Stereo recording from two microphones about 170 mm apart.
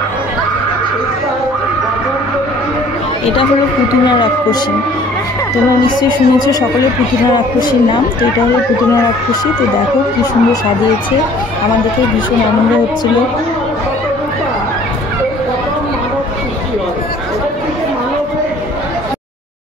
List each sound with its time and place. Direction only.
5.9 s music: 25° left (ahead or behind)